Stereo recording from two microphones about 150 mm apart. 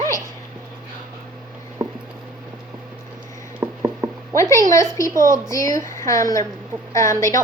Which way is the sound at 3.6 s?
20° right (ahead or behind).